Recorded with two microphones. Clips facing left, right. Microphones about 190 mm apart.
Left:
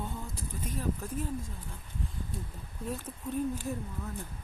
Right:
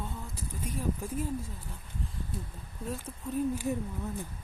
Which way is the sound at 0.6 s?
10° right (ahead or behind).